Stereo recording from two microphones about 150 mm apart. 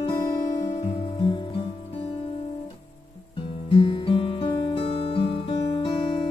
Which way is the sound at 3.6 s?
35° left (ahead or behind).